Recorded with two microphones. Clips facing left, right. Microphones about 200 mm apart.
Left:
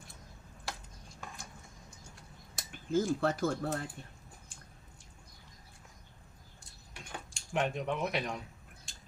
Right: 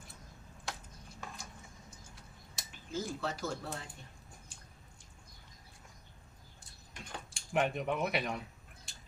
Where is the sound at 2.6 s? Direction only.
50° left (ahead or behind).